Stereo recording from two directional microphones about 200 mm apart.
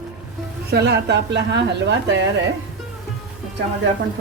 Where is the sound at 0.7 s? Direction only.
55° right (ahead or behind).